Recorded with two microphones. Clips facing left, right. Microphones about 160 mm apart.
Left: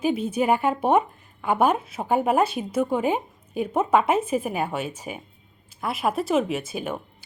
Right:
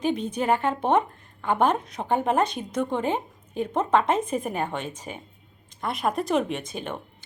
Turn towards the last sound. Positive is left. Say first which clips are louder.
# left 3 dB
turn(degrees=10)  # may be behind; listen again after turning